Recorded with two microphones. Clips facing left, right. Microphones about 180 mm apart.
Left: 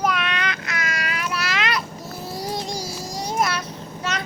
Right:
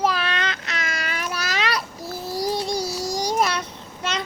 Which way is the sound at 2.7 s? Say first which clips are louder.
Right 5 dB; 80° right.